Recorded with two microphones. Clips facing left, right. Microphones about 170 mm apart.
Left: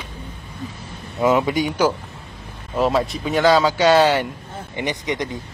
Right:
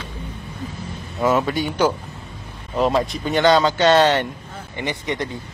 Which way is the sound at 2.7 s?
Centre (ahead or behind).